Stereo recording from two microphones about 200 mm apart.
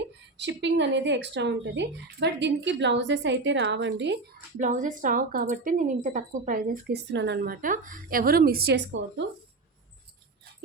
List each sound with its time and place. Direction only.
0.3 s speech: 60° right (ahead or behind)
4.5 s speech: 40° right (ahead or behind)